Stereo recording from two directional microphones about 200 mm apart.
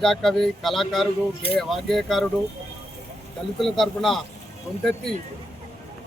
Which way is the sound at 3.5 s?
Centre (ahead or behind).